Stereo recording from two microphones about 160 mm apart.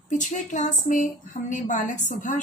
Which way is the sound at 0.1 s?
50° left (ahead or behind).